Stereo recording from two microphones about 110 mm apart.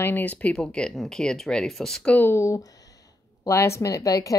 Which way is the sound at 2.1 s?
20° left (ahead or behind).